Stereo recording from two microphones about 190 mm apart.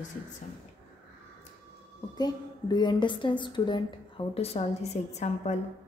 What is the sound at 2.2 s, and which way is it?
A woman's voice, 20° left (ahead or behind).